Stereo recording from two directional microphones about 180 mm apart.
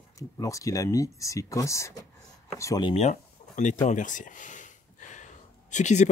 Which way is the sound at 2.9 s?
40° left (ahead or behind).